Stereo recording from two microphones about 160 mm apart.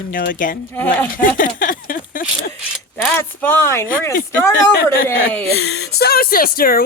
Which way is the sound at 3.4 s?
15° left (ahead or behind).